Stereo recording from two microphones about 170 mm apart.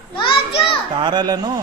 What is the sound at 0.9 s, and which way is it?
Speech, 25° right (ahead or behind).